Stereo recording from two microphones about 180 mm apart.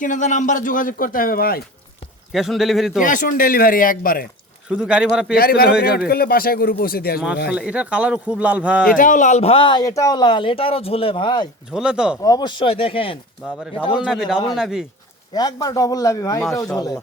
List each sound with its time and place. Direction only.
0.0 s speech: 45° left (ahead or behind)
2.3 s a man's voice: centre (ahead or behind)
3.0 s speech: 45° left (ahead or behind)
4.8 s a man's voice: 5° right (ahead or behind)
5.3 s speech: 55° left (ahead or behind)
7.5 s speech: 5° right (ahead or behind)
9.0 s speech: 45° left (ahead or behind); by 11.4 s 25° left (ahead or behind)
11.7 s a man's voice: 5° right (ahead or behind)
12.2 s a man's voice: 20° left (ahead or behind)
13.4 s a man's voice: 5° right (ahead or behind)
15.4 s a man's voice: 20° left (ahead or behind)